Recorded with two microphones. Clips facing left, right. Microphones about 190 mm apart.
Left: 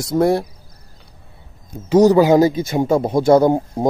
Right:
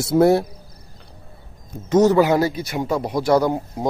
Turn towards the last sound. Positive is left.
turn(degrees=25)  # may be behind; listen again after turning